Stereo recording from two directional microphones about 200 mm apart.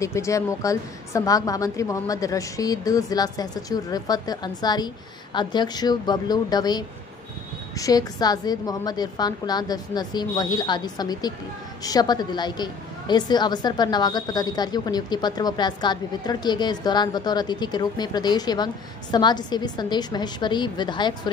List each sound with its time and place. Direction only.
0.0 s a woman's voice: 15° left (ahead or behind)